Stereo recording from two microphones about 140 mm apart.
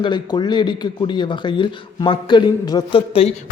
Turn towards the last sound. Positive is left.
turn(degrees=40)  # may be behind; listen again after turning